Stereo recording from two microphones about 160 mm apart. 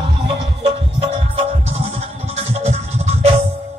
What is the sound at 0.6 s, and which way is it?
Music, 40° right (ahead or behind).